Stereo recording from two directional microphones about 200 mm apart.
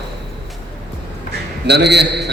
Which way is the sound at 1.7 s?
55° right (ahead or behind).